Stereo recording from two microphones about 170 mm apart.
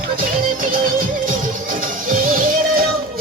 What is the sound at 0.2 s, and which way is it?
Music, 55° right (ahead or behind).